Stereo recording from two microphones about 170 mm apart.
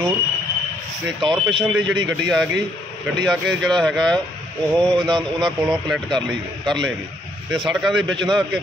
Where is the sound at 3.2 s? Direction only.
Centre (ahead or behind).